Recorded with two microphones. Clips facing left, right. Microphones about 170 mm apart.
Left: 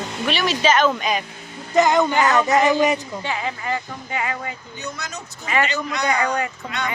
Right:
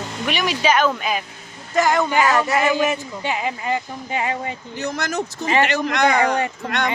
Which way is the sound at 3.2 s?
15° right (ahead or behind).